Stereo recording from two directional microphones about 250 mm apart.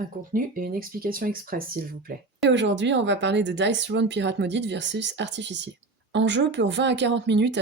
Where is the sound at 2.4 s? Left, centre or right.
Right.